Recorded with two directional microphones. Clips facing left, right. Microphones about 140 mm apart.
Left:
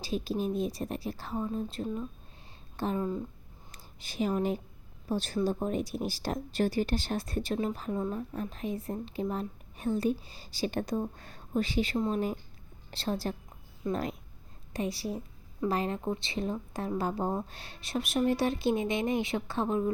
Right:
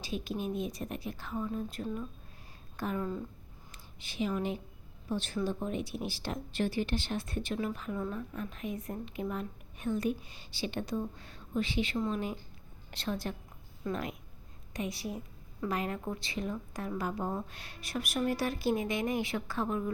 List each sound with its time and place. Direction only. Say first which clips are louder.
0.0 s a woman's voice: left 4 dB; 35° left (ahead or behind)
3.7 s a woman's voice: left 3 dB; 40° left (ahead or behind); by 19.9 s 25° left (ahead or behind)